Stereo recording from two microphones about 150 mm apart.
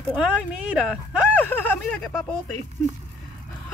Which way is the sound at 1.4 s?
10° left (ahead or behind).